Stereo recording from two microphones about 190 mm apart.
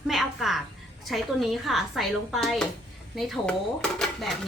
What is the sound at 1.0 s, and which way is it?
A woman's voice, centre (ahead or behind).